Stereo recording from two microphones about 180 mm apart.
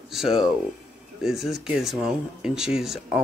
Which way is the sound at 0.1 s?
Centre (ahead or behind).